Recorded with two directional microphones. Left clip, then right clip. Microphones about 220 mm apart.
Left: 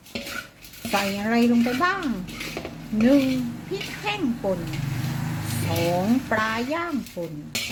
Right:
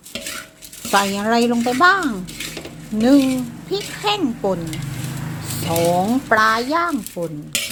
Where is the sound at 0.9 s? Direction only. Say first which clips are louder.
Right 7 dB; 20° right (ahead or behind).